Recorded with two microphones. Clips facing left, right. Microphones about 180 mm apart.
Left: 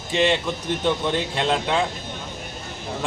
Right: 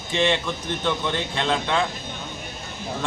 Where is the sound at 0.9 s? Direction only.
10° left (ahead or behind).